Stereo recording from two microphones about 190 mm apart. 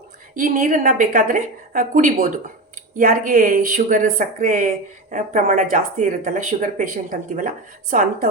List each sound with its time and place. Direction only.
0.3 s speech: 45° right (ahead or behind)